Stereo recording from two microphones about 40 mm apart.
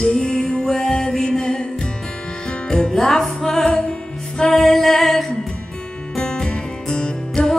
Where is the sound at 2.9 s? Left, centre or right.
Centre.